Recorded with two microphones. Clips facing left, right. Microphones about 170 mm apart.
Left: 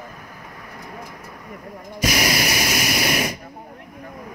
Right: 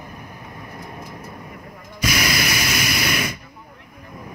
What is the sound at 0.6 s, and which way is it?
Vehicle, 20° right (ahead or behind).